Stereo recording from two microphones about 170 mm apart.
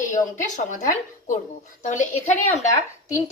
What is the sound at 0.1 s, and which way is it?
A woman's voice, 45° left (ahead or behind).